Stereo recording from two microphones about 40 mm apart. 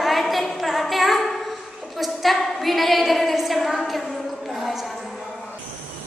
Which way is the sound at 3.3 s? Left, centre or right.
Centre.